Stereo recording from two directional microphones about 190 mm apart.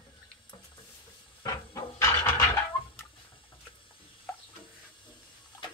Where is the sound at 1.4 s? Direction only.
15° left (ahead or behind).